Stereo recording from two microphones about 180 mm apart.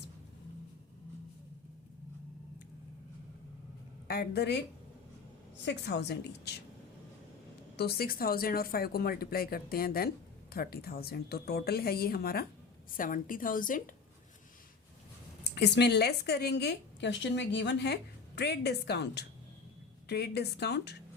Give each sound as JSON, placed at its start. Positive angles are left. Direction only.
{"t": 4.1, "sound": "speech", "side_deg": 60}
{"t": 5.6, "sound": "a woman's voice", "side_deg": 70}
{"t": 7.8, "sound": "a woman's voice", "side_deg": 60}
{"t": 15.4, "sound": "a woman's voice", "side_deg": 70}